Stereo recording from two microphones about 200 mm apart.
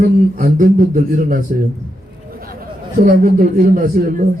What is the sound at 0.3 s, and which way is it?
Speech, 45° right (ahead or behind).